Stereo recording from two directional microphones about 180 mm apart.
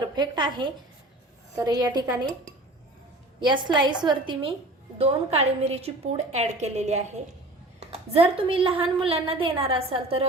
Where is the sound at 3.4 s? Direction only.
25° right (ahead or behind).